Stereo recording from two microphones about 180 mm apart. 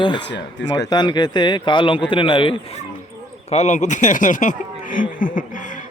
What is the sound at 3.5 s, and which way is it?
Speech, 40° left (ahead or behind).